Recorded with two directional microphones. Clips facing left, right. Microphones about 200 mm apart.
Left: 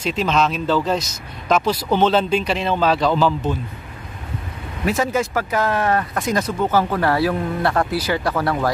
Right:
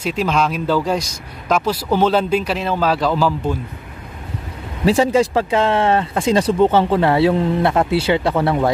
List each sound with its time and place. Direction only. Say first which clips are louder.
0.0 s a man's voice: right 1 dB; 10° right (ahead or behind)
4.8 s speech: right 6 dB; 30° right (ahead or behind)